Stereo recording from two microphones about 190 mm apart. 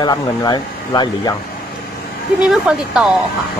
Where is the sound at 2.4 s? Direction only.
5° right (ahead or behind).